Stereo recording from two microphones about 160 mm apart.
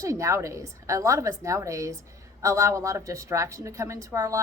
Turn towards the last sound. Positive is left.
turn(degrees=-20)  # may be behind; listen again after turning